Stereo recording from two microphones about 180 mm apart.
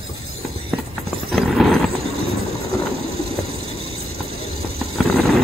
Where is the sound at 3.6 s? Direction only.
30° right (ahead or behind).